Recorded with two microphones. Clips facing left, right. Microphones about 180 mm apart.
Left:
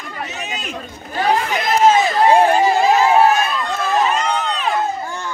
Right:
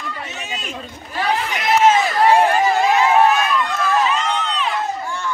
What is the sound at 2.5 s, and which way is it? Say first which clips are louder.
Crowd: left 2 dB; 35° left (ahead or behind).